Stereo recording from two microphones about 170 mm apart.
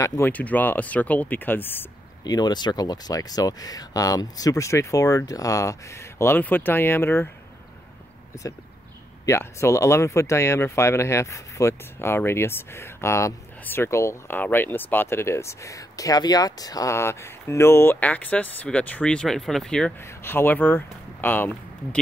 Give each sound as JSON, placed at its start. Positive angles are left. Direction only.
{"t": 0.0, "sound": "speech", "side_deg": 15}
{"t": 2.2, "sound": "speech", "side_deg": 25}
{"t": 9.2, "sound": "speech", "side_deg": 15}
{"t": 20.0, "sound": "speech", "side_deg": 15}